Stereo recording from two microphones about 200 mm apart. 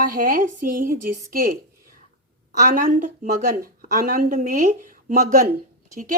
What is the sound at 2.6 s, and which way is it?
Speech, 45° right (ahead or behind).